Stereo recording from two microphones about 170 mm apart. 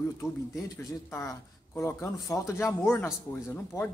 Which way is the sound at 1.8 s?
15° left (ahead or behind).